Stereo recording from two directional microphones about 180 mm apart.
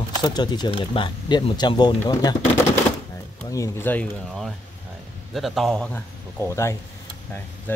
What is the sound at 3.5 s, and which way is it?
Speech, 15° left (ahead or behind).